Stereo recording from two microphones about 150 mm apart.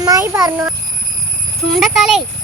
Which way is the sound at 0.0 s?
20° right (ahead or behind).